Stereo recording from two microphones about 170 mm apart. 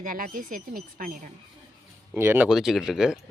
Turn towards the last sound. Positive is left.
turn(degrees=-5)  # may be behind; listen again after turning